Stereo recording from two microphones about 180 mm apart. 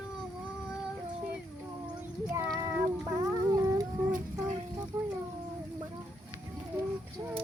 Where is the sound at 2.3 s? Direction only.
15° right (ahead or behind).